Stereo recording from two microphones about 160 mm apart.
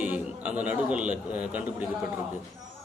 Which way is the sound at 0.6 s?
10° right (ahead or behind).